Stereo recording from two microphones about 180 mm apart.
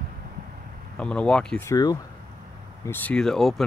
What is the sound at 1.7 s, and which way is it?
Speech, 20° left (ahead or behind).